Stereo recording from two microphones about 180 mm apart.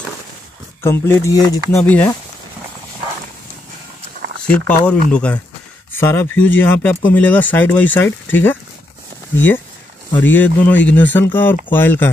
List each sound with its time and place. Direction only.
0.8 s speech: 15° left (ahead or behind)
4.5 s speech: 5° left (ahead or behind)